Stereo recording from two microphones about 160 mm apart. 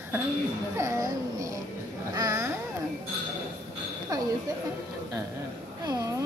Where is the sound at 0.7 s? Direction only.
20° right (ahead or behind).